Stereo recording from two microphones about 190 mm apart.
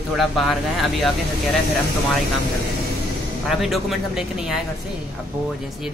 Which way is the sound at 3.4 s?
Centre (ahead or behind).